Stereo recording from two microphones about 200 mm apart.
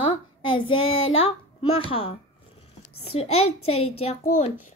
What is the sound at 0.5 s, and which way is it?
Child singing, 25° left (ahead or behind).